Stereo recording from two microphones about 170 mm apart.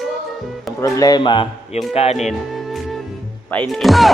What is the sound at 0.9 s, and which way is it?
Speech, 25° left (ahead or behind).